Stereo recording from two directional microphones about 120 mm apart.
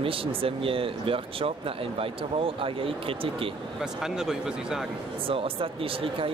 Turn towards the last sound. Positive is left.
turn(degrees=-50)  # may be behind; listen again after turning